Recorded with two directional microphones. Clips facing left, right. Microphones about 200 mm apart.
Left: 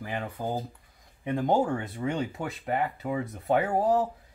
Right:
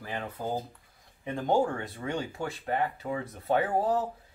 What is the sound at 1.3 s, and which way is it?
Speech, 20° left (ahead or behind).